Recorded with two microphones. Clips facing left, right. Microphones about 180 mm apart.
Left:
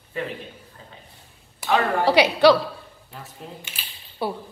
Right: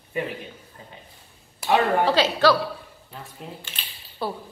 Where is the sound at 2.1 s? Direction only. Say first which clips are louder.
Left 8 dB; 15° left (ahead or behind).